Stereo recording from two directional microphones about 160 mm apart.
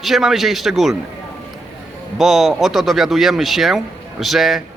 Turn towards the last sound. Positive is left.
turn(degrees=0)  # may be behind; listen again after turning